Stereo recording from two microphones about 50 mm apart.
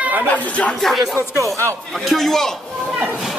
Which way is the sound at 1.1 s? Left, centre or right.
Right.